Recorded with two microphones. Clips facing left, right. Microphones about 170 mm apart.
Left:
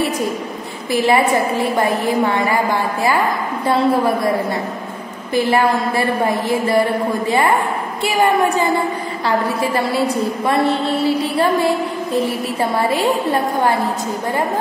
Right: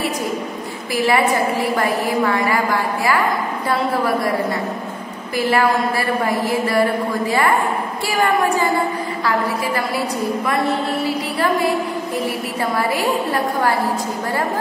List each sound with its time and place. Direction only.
0.9 s a woman's voice: 25° left (ahead or behind)
5.3 s a woman's voice: 25° left (ahead or behind)
8.0 s a woman's voice: 20° left (ahead or behind)
12.7 s a woman's voice: 25° left (ahead or behind)